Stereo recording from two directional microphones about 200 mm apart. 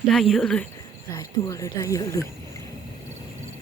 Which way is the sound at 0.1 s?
Centre (ahead or behind).